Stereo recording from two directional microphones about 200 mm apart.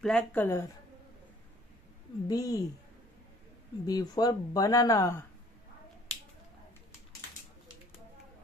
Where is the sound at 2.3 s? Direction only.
15° left (ahead or behind).